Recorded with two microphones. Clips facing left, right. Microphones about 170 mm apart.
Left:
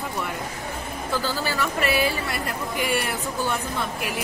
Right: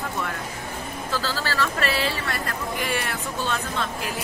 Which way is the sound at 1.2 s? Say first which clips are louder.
Right 1 dB; 20° left (ahead or behind).